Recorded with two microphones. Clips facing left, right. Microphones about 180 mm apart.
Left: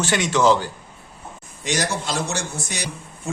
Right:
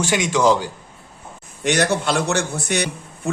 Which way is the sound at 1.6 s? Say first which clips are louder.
Right 6 dB; 60° right (ahead or behind).